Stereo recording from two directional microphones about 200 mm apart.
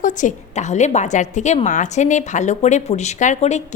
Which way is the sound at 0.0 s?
40° left (ahead or behind).